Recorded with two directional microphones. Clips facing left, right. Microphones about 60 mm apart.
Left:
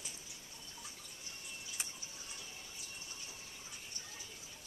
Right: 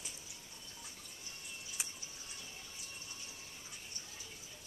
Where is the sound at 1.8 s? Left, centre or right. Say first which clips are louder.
Even; centre.